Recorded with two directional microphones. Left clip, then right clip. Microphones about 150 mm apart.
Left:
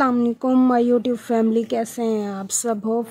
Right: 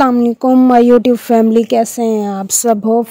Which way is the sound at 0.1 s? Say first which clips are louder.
Right 8 dB; 45° right (ahead or behind).